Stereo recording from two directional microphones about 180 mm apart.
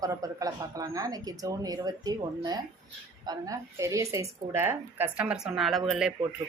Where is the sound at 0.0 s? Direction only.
20° right (ahead or behind).